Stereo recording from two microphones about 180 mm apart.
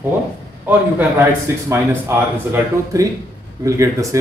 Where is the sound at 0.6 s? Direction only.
10° right (ahead or behind).